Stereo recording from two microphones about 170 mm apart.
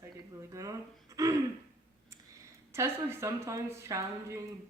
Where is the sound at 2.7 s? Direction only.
15° right (ahead or behind).